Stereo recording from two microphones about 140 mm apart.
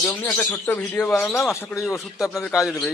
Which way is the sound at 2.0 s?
Centre (ahead or behind).